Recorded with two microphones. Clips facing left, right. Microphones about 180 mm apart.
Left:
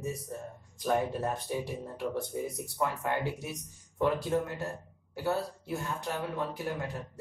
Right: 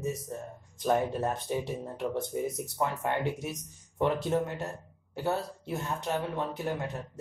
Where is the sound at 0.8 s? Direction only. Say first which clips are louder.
Right 2 dB; 20° right (ahead or behind).